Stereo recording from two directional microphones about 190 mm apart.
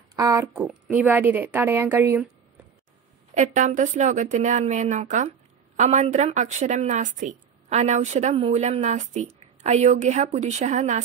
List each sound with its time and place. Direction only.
0.1 s speech: 15° right (ahead or behind)
3.3 s a woman's voice: 40° right (ahead or behind)